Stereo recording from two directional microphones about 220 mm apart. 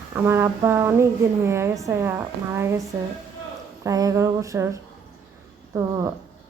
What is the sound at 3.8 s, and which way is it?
Speech, 15° right (ahead or behind).